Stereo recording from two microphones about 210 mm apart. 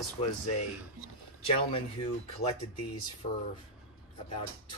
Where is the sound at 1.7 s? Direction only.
25° left (ahead or behind).